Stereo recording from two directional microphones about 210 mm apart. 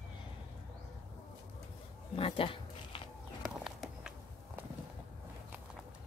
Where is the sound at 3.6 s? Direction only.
5° right (ahead or behind).